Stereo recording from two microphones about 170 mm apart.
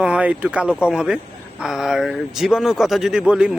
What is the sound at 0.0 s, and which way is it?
Speech, 5° right (ahead or behind).